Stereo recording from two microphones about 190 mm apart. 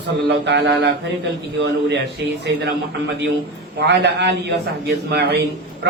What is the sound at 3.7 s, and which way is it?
A man's voice, 65° right (ahead or behind).